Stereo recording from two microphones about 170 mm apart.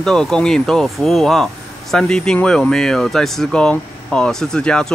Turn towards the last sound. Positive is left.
turn(degrees=5)  # may be behind; listen again after turning